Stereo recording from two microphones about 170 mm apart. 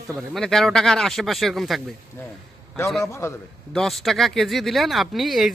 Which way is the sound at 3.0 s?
15° left (ahead or behind).